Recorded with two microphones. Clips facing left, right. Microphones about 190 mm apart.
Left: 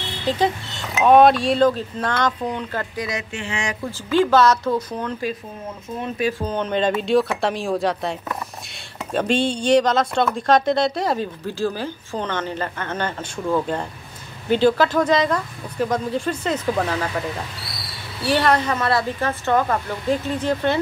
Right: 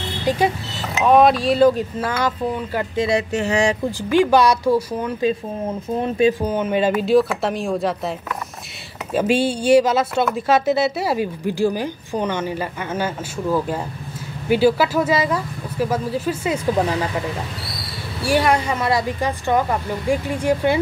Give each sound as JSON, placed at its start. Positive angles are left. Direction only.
{"t": 0.2, "sound": "speech", "side_deg": -10}
{"t": 1.0, "sound": "speech", "side_deg": 0}
{"t": 3.0, "sound": "speech", "side_deg": -30}
{"t": 3.8, "sound": "speech", "side_deg": -15}
{"t": 5.9, "sound": "speech", "side_deg": -25}
{"t": 6.4, "sound": "speech", "side_deg": -10}
{"t": 18.2, "sound": "speech", "side_deg": -10}